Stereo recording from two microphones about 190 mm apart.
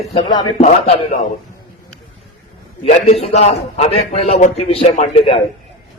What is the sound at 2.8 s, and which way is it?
A man's voice, 30° left (ahead or behind).